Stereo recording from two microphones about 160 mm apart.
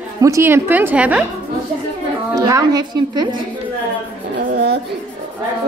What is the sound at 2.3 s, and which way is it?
A woman's voice, 25° right (ahead or behind).